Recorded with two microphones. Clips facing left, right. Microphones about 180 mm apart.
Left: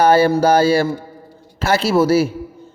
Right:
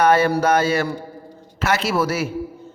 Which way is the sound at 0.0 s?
30° left (ahead or behind).